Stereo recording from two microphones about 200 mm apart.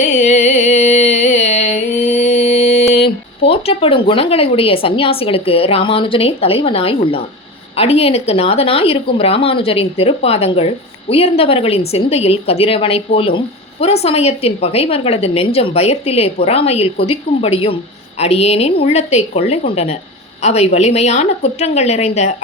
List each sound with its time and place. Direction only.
0.1 s music: 35° left (ahead or behind)
7.8 s a woman's voice: 30° left (ahead or behind)